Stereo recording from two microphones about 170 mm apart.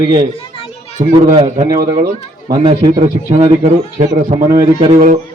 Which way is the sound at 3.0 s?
45° right (ahead or behind).